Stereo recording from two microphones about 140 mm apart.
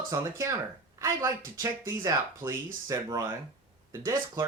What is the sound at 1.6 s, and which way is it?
Speech, 20° right (ahead or behind).